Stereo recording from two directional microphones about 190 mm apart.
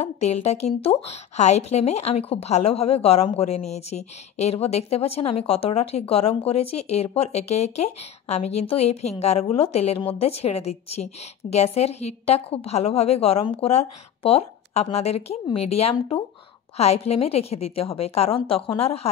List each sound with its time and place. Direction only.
0.0 s a woman's voice: 35° left (ahead or behind)